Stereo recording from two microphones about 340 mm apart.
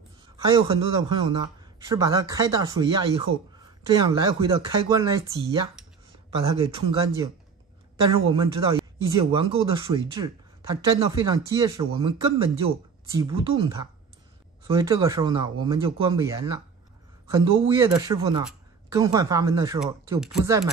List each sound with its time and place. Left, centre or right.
0.4 s speech: centre
8.3 s speech: centre